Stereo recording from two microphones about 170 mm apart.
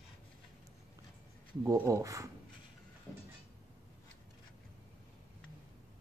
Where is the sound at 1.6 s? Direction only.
15° right (ahead or behind).